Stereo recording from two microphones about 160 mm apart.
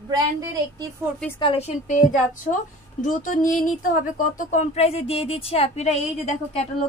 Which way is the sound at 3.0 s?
55° left (ahead or behind).